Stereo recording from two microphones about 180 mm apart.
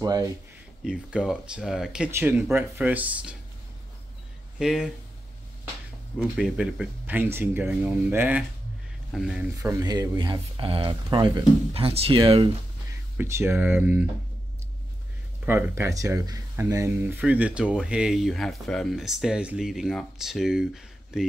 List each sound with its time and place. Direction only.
0.0 s speech: 20° right (ahead or behind)
0.8 s speech: 5° right (ahead or behind)
4.6 s speech: 5° right (ahead or behind)
6.1 s speech: 5° right (ahead or behind)
9.6 s speech: 20° right (ahead or behind)
13.2 s speech: 15° right (ahead or behind)
15.4 s speech: 15° right (ahead or behind)